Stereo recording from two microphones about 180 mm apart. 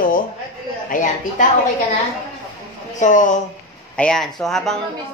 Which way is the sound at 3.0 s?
45° left (ahead or behind).